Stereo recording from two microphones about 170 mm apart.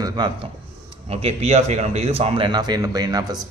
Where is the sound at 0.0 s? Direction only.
25° right (ahead or behind).